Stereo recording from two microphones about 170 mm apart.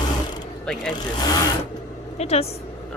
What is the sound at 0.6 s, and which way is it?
Speech, 5° left (ahead or behind).